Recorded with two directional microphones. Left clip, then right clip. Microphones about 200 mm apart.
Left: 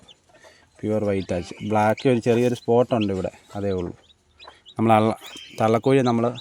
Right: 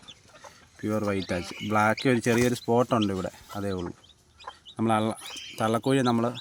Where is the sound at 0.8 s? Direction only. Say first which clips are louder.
Left 5 dB; 20° left (ahead or behind).